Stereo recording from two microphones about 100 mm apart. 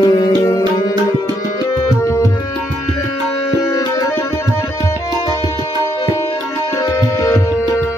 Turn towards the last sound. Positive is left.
turn(degrees=35)  # may be behind; listen again after turning